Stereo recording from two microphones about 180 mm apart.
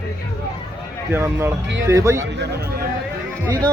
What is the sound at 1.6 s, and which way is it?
Speech, 90° right.